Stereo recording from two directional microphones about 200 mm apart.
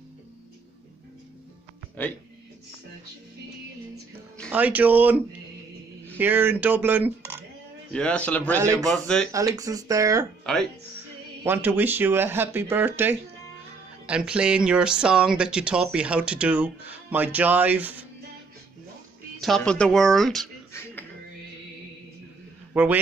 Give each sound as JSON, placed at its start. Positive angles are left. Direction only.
{"t": 4.5, "sound": "speech", "side_deg": -10}
{"t": 7.9, "sound": "speech", "side_deg": 5}
{"t": 9.6, "sound": "speech", "side_deg": -15}
{"t": 10.4, "sound": "speech", "side_deg": 5}
{"t": 11.4, "sound": "speech", "side_deg": -10}
{"t": 19.4, "sound": "speech", "side_deg": 5}
{"t": 22.7, "sound": "a man's voice", "side_deg": -5}